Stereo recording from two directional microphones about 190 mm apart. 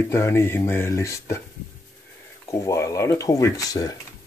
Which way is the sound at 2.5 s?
15° left (ahead or behind).